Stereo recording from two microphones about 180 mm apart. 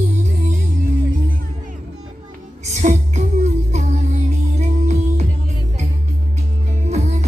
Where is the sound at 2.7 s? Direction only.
40° right (ahead or behind).